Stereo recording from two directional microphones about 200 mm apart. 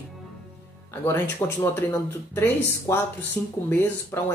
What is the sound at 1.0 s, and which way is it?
Speech, 10° left (ahead or behind).